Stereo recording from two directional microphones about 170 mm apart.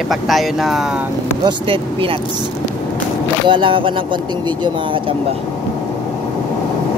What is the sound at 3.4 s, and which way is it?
Speech, 30° right (ahead or behind).